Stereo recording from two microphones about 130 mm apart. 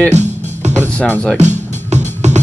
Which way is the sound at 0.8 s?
10° left (ahead or behind).